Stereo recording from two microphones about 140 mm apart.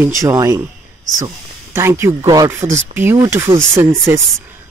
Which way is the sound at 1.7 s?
20° right (ahead or behind).